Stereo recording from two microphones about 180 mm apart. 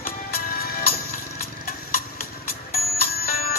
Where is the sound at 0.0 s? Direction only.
55° left (ahead or behind).